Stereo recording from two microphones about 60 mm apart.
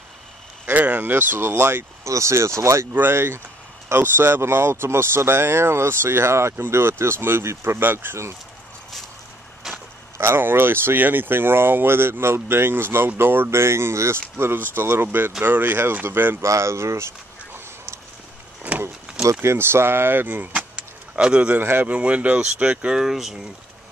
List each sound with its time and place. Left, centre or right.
0.7 s speech: right
1.1 s speech: right
2.0 s speech: right
2.9 s speech: right
9.6 s vehicle: centre
10.1 s speech: right
14.4 s speech: right
16.4 s speech: right
18.6 s vehicle: right
19.4 s speech: right
20.5 s vehicle: centre
21.5 s speech: right
21.9 s speech: right; by 23.4 s centre